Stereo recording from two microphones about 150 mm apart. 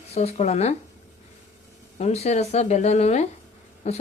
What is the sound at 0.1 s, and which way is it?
Speech, 45° left (ahead or behind).